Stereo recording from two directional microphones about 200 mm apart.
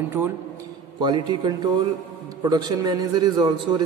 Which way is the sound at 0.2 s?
10° right (ahead or behind).